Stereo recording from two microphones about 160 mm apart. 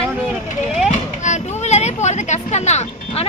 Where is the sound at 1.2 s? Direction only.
45° left (ahead or behind).